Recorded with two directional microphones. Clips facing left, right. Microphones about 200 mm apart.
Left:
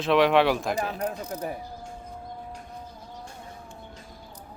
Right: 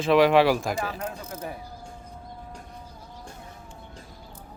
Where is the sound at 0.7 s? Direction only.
35° left (ahead or behind).